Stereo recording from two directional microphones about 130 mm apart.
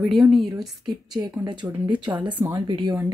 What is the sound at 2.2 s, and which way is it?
Speech, 15° right (ahead or behind).